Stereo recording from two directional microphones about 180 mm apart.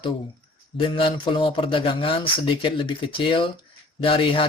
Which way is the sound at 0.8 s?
30° left (ahead or behind).